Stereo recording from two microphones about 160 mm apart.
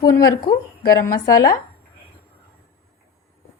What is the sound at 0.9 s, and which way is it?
Speech, 20° left (ahead or behind).